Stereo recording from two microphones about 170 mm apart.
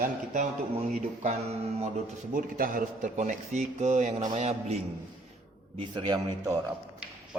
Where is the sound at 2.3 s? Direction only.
55° right (ahead or behind).